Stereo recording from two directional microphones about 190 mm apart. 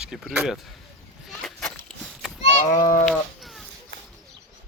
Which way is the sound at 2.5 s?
40° left (ahead or behind).